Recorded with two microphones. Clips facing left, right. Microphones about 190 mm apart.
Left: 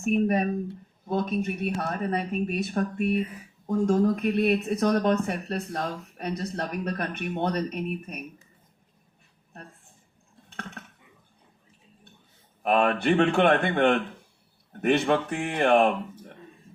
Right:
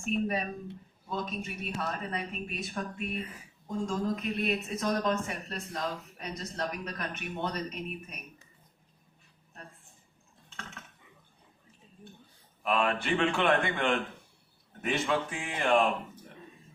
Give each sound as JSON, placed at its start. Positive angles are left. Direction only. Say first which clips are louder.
{"t": 0.0, "sound": "speech", "louder": "left 7 dB", "side_deg": 50}
{"t": 2.8, "sound": "speech", "louder": "left 9 dB", "side_deg": 45}
{"t": 3.7, "sound": "speech", "louder": "left 9 dB", "side_deg": 60}
{"t": 10.5, "sound": "a sound", "louder": "left 7 dB", "side_deg": 60}
{"t": 12.6, "sound": "speech", "louder": "left 7 dB", "side_deg": 60}